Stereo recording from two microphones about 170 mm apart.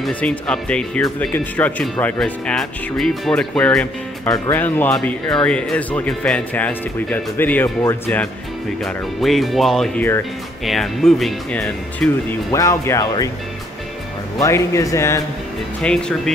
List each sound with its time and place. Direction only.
0.0 s speech: 10° left (ahead or behind)
8.8 s speech: centre (ahead or behind)
12.4 s speech: 20° left (ahead or behind)
14.4 s speech: 15° left (ahead or behind)
15.8 s speech: 5° left (ahead or behind)